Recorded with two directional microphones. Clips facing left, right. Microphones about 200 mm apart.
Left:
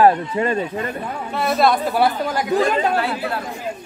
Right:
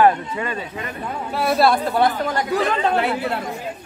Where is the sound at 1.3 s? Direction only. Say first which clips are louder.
Even; 10° right (ahead or behind); by 2.9 s 10° left (ahead or behind).